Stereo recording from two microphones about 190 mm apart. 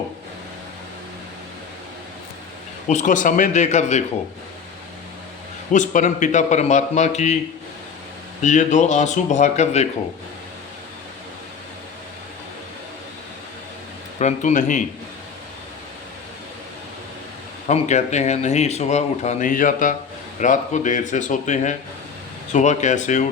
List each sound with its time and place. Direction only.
2.8 s speech: 40° left (ahead or behind)
5.7 s speech: 40° left (ahead or behind)
8.4 s speech: 40° left (ahead or behind)
14.2 s speech: 40° left (ahead or behind)
17.7 s speech: 35° left (ahead or behind)